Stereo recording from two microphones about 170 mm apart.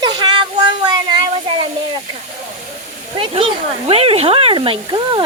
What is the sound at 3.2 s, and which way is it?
Speech, 30° right (ahead or behind).